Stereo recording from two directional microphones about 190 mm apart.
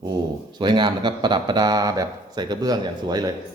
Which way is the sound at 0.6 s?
25° right (ahead or behind).